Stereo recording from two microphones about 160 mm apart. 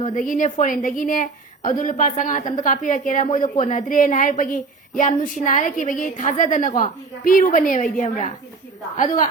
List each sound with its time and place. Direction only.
0.0 s a woman's voice: 55° left (ahead or behind)